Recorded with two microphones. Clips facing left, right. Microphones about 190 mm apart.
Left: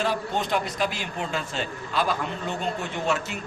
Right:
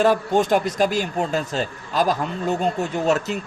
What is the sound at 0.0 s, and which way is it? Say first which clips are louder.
Speech: right 9 dB; 45° right (ahead or behind).